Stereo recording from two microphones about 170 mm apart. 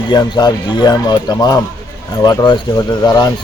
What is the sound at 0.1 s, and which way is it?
Speech, 25° left (ahead or behind).